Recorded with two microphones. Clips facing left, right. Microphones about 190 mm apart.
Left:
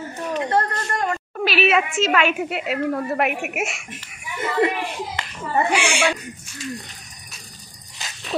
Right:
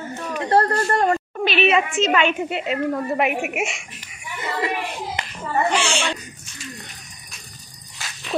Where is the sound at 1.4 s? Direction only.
5° left (ahead or behind).